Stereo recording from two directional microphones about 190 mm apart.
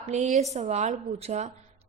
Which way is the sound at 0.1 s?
35° right (ahead or behind).